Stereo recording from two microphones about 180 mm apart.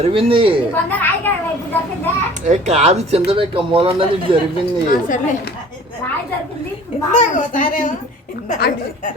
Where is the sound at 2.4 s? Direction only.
40° right (ahead or behind).